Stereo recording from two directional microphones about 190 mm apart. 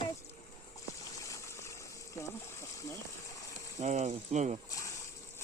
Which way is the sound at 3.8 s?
35° right (ahead or behind).